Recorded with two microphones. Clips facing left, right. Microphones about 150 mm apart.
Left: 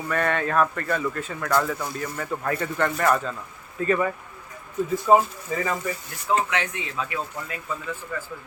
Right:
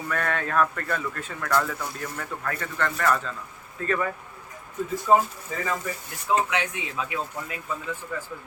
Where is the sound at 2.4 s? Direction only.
20° left (ahead or behind).